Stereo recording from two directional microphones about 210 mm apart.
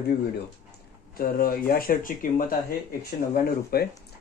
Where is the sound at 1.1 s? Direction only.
45° left (ahead or behind).